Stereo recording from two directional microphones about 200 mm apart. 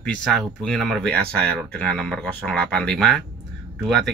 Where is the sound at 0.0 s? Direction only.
5° left (ahead or behind).